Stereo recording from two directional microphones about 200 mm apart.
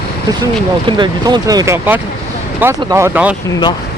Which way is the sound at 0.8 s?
20° right (ahead or behind).